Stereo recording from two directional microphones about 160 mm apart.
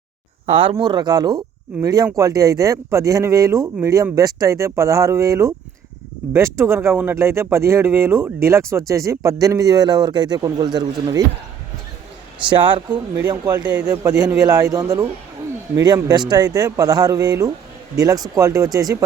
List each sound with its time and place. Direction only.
0.4 s speech: 35° right (ahead or behind)
12.5 s speech: 30° right (ahead or behind)
13.1 s speech: 20° right (ahead or behind)